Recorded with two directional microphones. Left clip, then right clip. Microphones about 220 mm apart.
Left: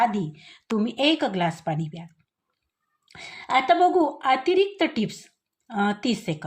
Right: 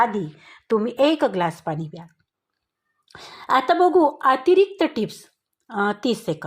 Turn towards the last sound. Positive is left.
turn(degrees=-20)  # may be behind; listen again after turning